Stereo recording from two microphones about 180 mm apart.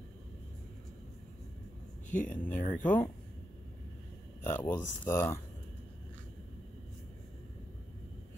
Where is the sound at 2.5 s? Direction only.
45° left (ahead or behind).